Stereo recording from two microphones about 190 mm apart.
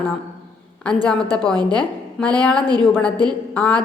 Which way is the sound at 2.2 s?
5° left (ahead or behind).